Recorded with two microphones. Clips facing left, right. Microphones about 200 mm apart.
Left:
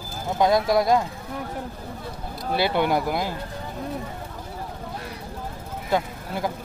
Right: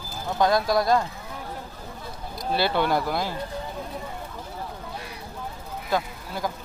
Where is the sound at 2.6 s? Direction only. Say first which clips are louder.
Left 2 dB; 15° left (ahead or behind).